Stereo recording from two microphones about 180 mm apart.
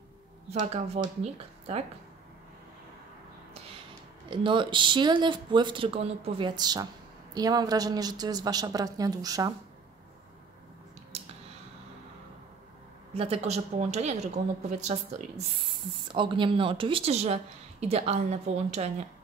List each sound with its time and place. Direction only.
0.5 s a woman's voice: 35° right (ahead or behind)
4.3 s speech: 25° right (ahead or behind)
13.1 s a woman's voice: 35° right (ahead or behind)
16.1 s a woman's voice: 25° right (ahead or behind)